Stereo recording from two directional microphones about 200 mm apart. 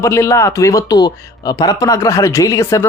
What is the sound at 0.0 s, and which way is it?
Speech, 15° left (ahead or behind).